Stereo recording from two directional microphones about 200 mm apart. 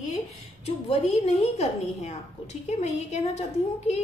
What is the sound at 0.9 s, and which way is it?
A woman's voice, 35° left (ahead or behind).